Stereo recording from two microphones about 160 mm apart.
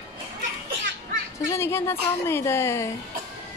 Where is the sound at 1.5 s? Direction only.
15° left (ahead or behind).